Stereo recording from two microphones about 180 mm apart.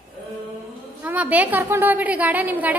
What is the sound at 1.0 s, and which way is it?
A woman's voice, 10° right (ahead or behind).